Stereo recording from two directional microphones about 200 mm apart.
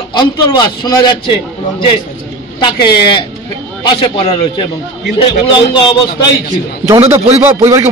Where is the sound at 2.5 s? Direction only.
20° left (ahead or behind).